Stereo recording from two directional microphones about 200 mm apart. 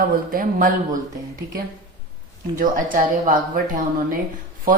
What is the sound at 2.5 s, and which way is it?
A woman's voice, 40° right (ahead or behind).